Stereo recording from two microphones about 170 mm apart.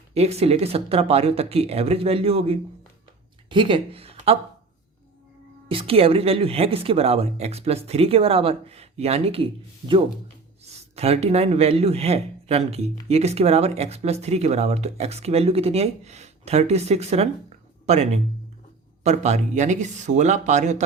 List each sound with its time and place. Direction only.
0.1 s speech: 40° right (ahead or behind)
5.6 s speech: 30° right (ahead or behind)